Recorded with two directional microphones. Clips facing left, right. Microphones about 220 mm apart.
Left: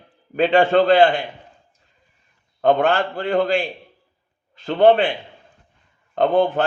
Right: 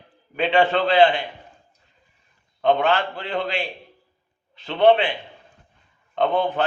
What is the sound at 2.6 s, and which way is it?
A man's voice, 45° left (ahead or behind).